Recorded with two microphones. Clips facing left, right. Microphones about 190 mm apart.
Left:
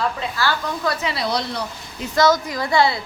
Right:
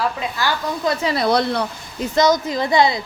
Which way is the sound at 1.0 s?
50° right (ahead or behind).